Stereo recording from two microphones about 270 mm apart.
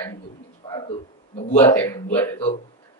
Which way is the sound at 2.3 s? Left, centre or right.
Left.